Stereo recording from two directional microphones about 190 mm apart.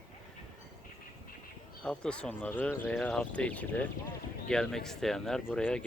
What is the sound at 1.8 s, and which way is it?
Speech, 5° left (ahead or behind).